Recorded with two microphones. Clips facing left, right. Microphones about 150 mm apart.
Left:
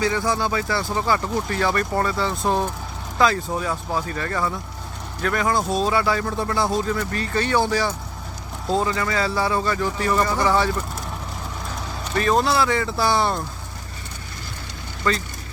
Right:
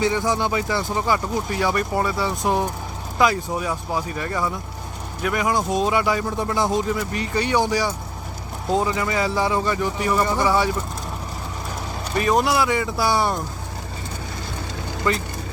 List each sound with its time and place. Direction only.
0.0 s speech: 20° right (ahead or behind)
12.1 s speech: 15° right (ahead or behind)
15.1 s speech: 20° right (ahead or behind)